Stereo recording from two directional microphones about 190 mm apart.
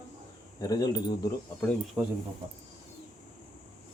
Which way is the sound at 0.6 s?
20° left (ahead or behind).